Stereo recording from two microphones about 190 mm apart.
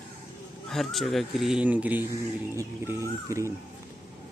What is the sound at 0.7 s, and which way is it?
Speech, centre (ahead or behind).